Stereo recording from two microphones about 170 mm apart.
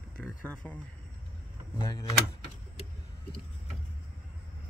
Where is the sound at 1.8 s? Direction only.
20° left (ahead or behind).